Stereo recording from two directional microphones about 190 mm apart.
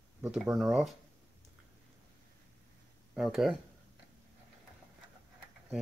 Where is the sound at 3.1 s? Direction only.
Centre (ahead or behind).